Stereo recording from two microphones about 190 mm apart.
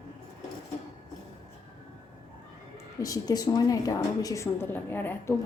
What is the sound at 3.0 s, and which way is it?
A woman's voice, 20° left (ahead or behind).